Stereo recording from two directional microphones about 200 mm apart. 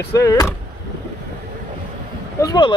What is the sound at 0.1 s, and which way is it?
Speech, 15° left (ahead or behind).